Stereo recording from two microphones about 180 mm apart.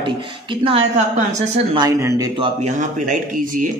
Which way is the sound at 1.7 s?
20° right (ahead or behind).